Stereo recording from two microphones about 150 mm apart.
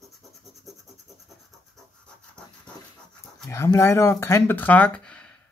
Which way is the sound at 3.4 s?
15° left (ahead or behind).